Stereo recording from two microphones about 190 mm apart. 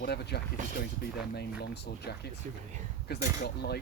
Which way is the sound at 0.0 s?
60° left (ahead or behind).